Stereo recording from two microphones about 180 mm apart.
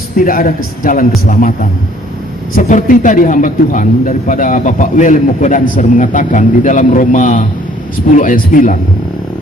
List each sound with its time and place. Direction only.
0.2 s a man's voice: 50° left (ahead or behind)
2.6 s a man's voice: 45° left (ahead or behind)